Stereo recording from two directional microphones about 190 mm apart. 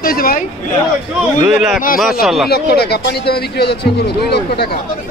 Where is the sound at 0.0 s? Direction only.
50° left (ahead or behind).